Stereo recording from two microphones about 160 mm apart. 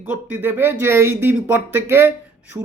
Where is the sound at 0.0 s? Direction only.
10° right (ahead or behind).